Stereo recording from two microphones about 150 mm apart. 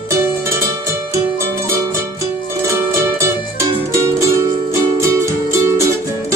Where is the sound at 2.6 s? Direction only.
20° right (ahead or behind).